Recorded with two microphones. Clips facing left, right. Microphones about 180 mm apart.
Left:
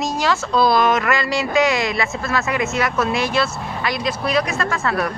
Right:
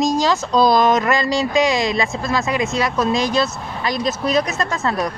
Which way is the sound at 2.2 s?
15° right (ahead or behind).